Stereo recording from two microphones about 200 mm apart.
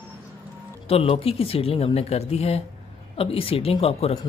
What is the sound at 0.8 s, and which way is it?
Speech, 30° left (ahead or behind).